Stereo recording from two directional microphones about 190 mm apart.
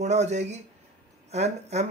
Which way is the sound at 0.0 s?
35° right (ahead or behind).